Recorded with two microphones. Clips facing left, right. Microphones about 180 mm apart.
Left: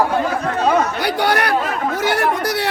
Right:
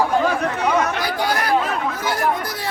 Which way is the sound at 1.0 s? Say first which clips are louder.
Left 4 dB; 70° left (ahead or behind).